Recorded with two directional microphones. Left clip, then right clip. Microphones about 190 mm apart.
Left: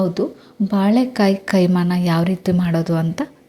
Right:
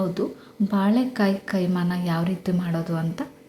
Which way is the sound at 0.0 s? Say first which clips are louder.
Left 6 dB; 30° left (ahead or behind).